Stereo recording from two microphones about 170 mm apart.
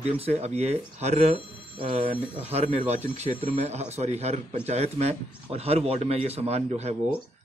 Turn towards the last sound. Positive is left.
turn(degrees=-40)  # may be behind; listen again after turning